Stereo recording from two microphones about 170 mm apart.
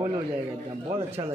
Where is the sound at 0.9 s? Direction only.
25° right (ahead or behind).